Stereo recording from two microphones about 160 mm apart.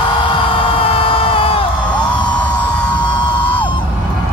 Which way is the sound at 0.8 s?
35° left (ahead or behind).